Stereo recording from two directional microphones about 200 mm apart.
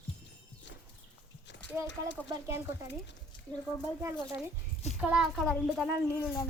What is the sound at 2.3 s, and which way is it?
Speech, 15° right (ahead or behind).